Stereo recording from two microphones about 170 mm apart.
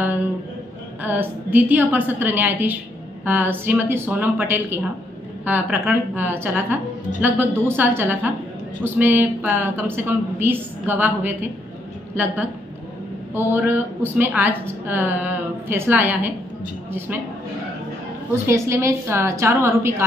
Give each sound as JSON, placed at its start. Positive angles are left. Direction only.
{"t": 1.0, "sound": "a woman's voice", "side_deg": -10}
{"t": 13.3, "sound": "a woman's voice", "side_deg": -15}
{"t": 18.5, "sound": "a woman's voice", "side_deg": -15}